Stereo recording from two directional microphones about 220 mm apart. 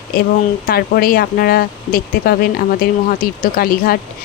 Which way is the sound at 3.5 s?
40° left (ahead or behind).